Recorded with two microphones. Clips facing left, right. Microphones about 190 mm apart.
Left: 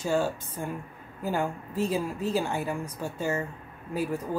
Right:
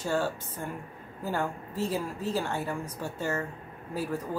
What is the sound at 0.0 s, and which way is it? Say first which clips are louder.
A woman's voice: left 2 dB; 15° left (ahead or behind).